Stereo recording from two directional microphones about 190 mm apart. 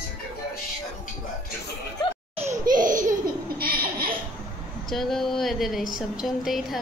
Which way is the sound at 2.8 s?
45° right (ahead or behind).